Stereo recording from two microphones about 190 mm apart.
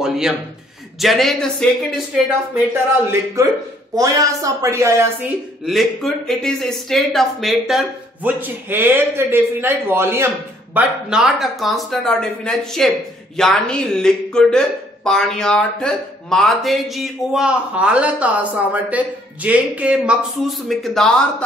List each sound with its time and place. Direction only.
0.0 s speech: 5° right (ahead or behind)
2.5 s speech: 10° right (ahead or behind)
5.7 s speech: centre (ahead or behind)